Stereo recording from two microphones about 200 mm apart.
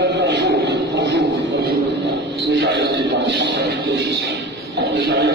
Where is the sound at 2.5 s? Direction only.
60° right (ahead or behind).